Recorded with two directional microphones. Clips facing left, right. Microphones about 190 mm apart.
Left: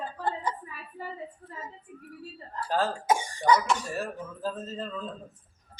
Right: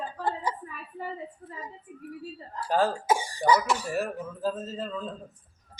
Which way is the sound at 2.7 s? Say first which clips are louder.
Right 2 dB; 10° right (ahead or behind).